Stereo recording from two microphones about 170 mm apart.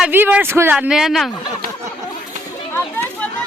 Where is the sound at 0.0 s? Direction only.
10° right (ahead or behind).